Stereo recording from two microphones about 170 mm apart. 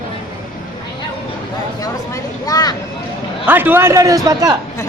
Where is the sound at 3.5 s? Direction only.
10° right (ahead or behind).